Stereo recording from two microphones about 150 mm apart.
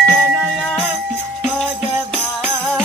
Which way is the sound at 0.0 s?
15° right (ahead or behind).